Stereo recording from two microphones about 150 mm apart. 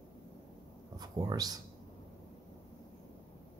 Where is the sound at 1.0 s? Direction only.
25° right (ahead or behind).